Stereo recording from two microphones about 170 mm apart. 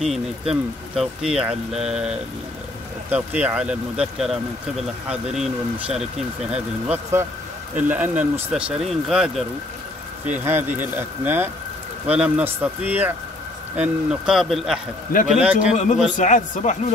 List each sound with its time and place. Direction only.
0.0 s speech: centre (ahead or behind)
16.2 s speech: 45° left (ahead or behind)